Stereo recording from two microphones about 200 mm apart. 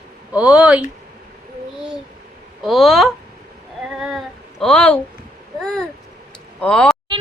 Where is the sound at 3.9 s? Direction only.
Centre (ahead or behind).